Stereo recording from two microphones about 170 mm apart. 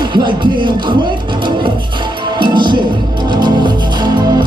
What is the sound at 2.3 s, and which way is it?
Music, 25° right (ahead or behind).